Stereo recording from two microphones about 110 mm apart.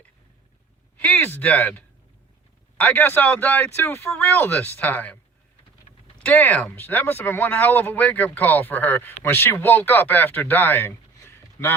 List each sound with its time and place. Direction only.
0.9 s speech: 15° left (ahead or behind)
6.2 s speech: 15° left (ahead or behind)